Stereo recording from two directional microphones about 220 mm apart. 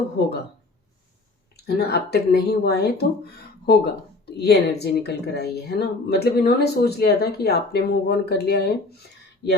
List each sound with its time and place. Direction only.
1.5 s speech: 45° left (ahead or behind)